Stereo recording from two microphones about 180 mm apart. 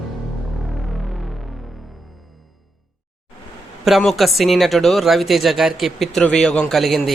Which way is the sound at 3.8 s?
Centre (ahead or behind).